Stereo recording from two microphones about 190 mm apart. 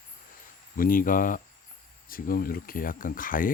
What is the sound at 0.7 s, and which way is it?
Speech, 45° left (ahead or behind).